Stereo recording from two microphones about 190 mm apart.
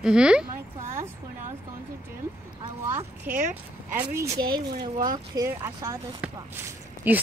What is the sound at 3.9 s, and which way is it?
Speech, 15° right (ahead or behind).